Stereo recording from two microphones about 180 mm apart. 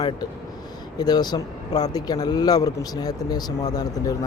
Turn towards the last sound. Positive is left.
turn(degrees=20)  # may be behind; listen again after turning